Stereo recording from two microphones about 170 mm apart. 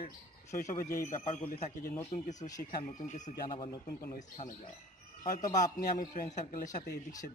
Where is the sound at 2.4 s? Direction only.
55° left (ahead or behind).